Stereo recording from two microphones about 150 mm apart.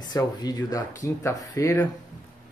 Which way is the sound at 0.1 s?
25° left (ahead or behind).